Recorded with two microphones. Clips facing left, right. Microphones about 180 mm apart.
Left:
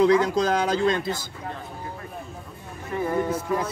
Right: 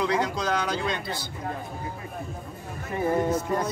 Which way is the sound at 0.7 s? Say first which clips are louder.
Left 6 dB; 45° left (ahead or behind).